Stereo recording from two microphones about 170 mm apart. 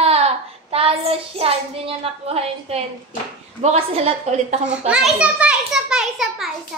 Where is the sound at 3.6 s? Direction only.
35° right (ahead or behind).